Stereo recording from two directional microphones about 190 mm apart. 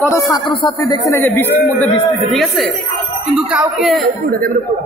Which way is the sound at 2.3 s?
Centre (ahead or behind).